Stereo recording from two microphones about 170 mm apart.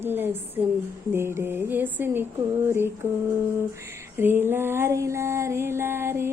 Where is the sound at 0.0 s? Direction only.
10° right (ahead or behind).